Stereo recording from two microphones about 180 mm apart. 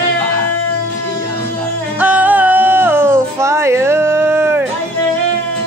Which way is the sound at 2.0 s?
10° right (ahead or behind).